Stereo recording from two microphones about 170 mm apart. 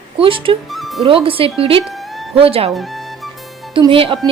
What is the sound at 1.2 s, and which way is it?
Speech, 30° right (ahead or behind).